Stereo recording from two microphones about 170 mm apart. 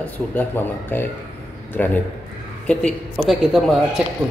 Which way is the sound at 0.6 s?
10° left (ahead or behind).